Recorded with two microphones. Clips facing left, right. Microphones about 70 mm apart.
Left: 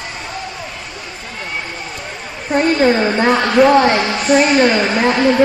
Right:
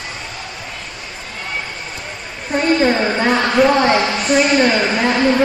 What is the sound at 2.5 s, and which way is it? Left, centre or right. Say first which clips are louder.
A woman's voice: left 2 dB; centre.